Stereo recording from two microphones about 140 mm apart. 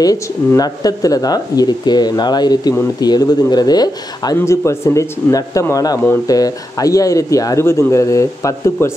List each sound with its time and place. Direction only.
0.0 s speech: 25° left (ahead or behind)